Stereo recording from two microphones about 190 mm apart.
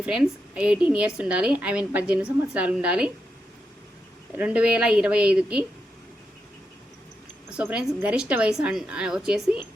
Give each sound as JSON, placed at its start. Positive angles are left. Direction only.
{"t": 0.0, "sound": "a woman's voice", "side_deg": -5}
{"t": 4.4, "sound": "a woman's voice", "side_deg": -5}
{"t": 7.5, "sound": "a woman's voice", "side_deg": -5}